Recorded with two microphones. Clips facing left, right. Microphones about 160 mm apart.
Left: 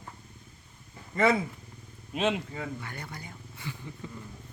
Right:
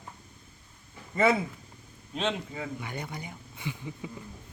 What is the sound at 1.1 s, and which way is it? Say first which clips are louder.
Speech: even; 10° right (ahead or behind).